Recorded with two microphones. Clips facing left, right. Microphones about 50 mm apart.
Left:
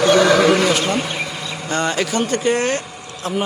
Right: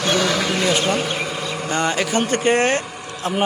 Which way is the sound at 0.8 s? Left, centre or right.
Centre.